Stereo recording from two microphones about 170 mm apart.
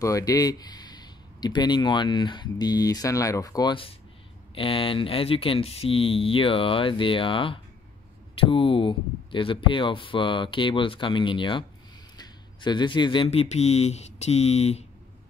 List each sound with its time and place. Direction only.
0.0 s speech: 20° left (ahead or behind); by 14.9 s 40° left (ahead or behind)